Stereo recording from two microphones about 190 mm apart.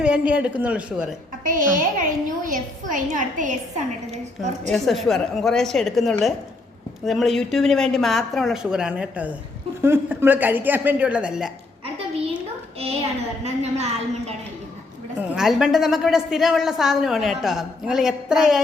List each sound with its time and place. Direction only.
0.0 s speech: 5° right (ahead or behind)
1.5 s a woman's voice: 45° right (ahead or behind)
4.7 s a woman's voice: centre (ahead or behind)
11.9 s a sound: 30° right (ahead or behind)
13.4 s a woman's voice: 35° right (ahead or behind)
15.4 s a woman's voice: 5° right (ahead or behind)